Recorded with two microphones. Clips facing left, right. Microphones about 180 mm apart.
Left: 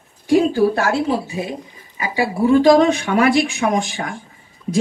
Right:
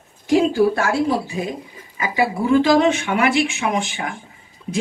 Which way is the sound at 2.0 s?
35° left (ahead or behind).